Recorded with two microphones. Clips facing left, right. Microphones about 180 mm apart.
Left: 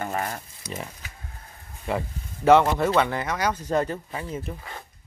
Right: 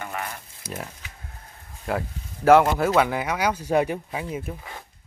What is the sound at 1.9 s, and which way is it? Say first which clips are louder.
Speech: even; 5° right (ahead or behind).